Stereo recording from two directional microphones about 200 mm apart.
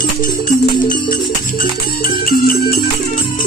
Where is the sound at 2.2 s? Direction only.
45° left (ahead or behind).